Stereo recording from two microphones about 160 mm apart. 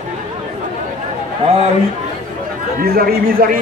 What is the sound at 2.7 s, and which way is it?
Speech, 65° right (ahead or behind).